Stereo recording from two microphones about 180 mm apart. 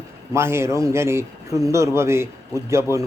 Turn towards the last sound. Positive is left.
turn(degrees=-15)  # may be behind; listen again after turning